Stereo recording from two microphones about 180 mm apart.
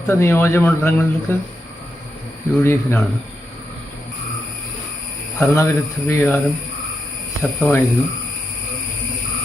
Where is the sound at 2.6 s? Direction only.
10° left (ahead or behind).